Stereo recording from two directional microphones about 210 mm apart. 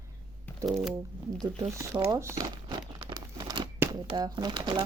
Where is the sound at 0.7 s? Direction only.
Centre (ahead or behind).